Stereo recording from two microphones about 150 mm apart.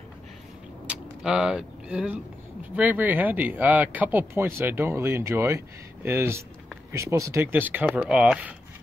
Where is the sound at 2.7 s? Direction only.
10° right (ahead or behind).